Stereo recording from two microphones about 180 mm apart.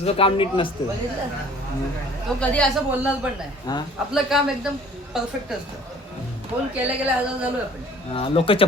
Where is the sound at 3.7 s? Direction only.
20° left (ahead or behind).